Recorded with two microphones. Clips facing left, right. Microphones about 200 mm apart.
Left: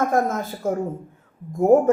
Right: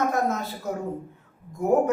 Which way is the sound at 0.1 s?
50° left (ahead or behind).